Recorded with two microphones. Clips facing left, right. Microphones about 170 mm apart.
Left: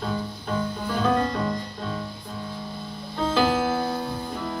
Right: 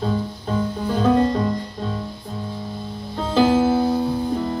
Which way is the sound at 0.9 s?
25° right (ahead or behind).